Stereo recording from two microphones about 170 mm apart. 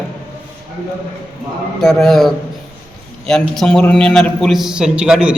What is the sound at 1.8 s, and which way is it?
A man's voice, centre (ahead or behind).